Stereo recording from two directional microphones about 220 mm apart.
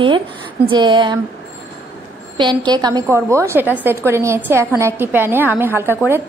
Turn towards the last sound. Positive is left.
turn(degrees=-10)  # may be behind; listen again after turning